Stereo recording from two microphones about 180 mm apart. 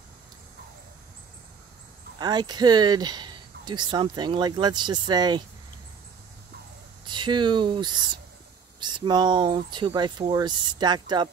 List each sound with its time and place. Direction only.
2.1 s speech: 25° right (ahead or behind)
7.1 s speech: 25° right (ahead or behind)